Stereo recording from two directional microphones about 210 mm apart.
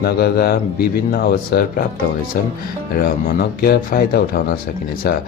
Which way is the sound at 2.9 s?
45° left (ahead or behind).